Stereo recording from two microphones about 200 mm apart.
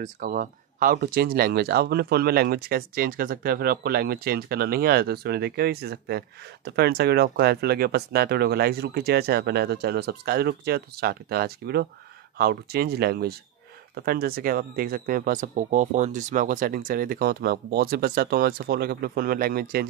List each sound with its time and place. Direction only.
0.0 s speech: 45° right (ahead or behind)